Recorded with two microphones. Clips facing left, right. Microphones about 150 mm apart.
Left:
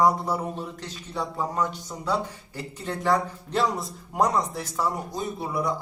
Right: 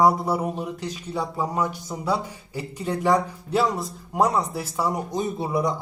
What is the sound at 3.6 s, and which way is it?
Speech, centre (ahead or behind).